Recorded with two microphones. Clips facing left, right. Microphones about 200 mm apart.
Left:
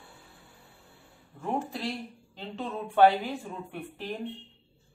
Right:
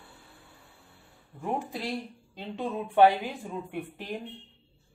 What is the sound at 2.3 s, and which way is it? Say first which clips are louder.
Speech: right 3 dB; 15° right (ahead or behind).